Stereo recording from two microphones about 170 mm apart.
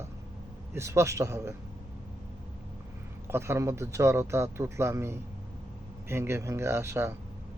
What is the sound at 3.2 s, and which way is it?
Speech, 15° right (ahead or behind).